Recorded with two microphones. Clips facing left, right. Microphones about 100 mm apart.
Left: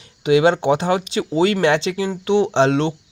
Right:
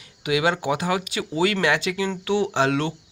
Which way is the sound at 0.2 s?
30° left (ahead or behind).